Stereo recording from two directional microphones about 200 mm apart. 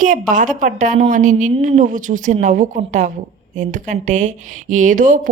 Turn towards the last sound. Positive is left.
turn(degrees=-40)  # may be behind; listen again after turning